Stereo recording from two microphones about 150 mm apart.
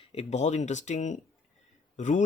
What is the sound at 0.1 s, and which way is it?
Speech, 45° left (ahead or behind).